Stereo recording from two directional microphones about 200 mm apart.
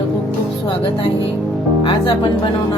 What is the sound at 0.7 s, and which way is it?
Speech, 25° left (ahead or behind).